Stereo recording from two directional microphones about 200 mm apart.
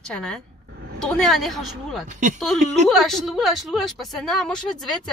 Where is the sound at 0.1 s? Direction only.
5° left (ahead or behind).